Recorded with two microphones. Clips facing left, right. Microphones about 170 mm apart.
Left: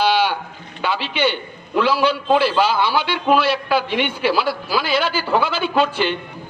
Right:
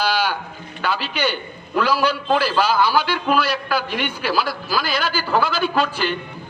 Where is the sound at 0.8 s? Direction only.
25° left (ahead or behind).